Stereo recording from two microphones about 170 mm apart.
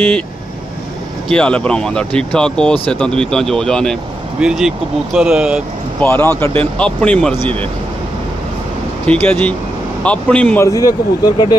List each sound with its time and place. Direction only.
1.3 s speech: 5° left (ahead or behind)
6.0 s speech: 10° left (ahead or behind)
9.0 s speech: 5° left (ahead or behind)
10.7 s speech: 20° left (ahead or behind)